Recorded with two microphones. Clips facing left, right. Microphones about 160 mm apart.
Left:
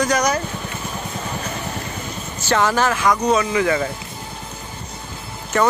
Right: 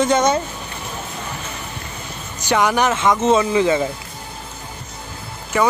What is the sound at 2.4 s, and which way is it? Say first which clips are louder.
Speech: right 1 dB; 15° right (ahead or behind).